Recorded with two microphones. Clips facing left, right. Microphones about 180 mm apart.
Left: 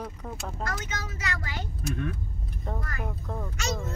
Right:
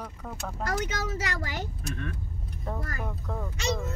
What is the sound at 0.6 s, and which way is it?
Speech, 40° right (ahead or behind).